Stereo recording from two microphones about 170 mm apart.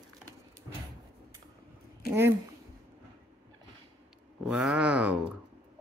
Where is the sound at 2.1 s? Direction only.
15° right (ahead or behind).